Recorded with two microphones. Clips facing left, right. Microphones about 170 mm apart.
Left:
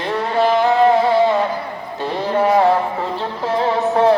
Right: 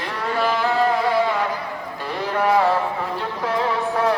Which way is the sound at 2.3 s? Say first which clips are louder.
Left 4 dB; 30° left (ahead or behind).